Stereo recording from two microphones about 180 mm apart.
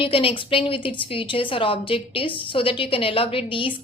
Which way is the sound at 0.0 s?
30° left (ahead or behind).